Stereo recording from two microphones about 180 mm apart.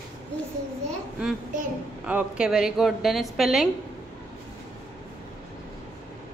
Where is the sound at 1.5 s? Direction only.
45° right (ahead or behind).